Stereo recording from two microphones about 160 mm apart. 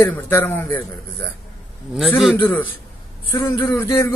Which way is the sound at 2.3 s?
10° left (ahead or behind).